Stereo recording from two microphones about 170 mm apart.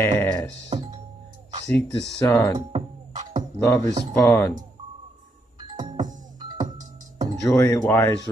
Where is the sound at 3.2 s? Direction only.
50° right (ahead or behind).